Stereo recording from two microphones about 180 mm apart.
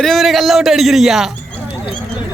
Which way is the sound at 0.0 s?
Centre (ahead or behind).